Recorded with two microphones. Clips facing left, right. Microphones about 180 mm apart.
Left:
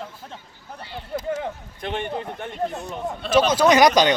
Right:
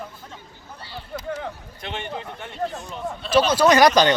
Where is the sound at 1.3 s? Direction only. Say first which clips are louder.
Left 3 dB; 45° left (ahead or behind).